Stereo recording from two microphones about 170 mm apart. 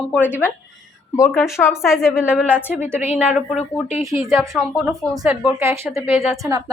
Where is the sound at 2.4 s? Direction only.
10° left (ahead or behind).